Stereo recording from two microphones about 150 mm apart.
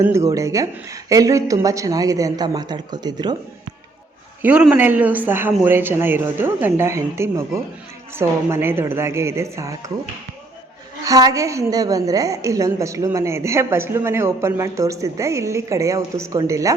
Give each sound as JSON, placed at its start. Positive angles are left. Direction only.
{"t": 0.0, "sound": "a woman's voice", "side_deg": -20}
{"t": 4.4, "sound": "speech", "side_deg": -10}
{"t": 11.0, "sound": "a woman's voice", "side_deg": -25}